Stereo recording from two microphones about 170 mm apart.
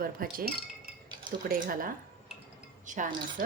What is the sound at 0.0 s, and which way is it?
Speech, 55° right (ahead or behind).